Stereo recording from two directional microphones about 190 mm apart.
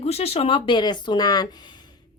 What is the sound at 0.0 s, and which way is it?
Speech, 30° left (ahead or behind).